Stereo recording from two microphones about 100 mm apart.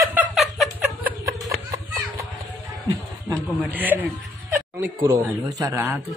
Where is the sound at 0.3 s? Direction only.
5° right (ahead or behind).